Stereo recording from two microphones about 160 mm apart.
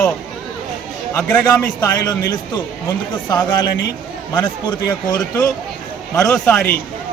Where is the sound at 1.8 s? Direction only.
25° left (ahead or behind).